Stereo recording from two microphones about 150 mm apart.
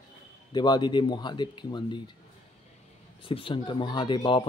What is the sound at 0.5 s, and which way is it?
Speech, 30° left (ahead or behind).